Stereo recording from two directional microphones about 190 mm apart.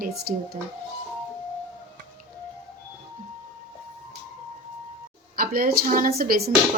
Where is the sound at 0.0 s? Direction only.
55° right (ahead or behind).